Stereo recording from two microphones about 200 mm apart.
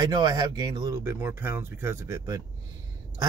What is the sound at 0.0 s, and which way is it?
Speech, 20° right (ahead or behind).